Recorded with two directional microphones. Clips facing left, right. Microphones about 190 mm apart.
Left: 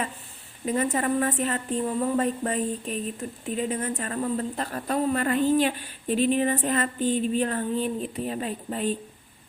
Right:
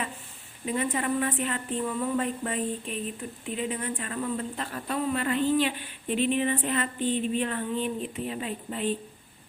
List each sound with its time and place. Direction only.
0.6 s a woman's voice: 45° left (ahead or behind)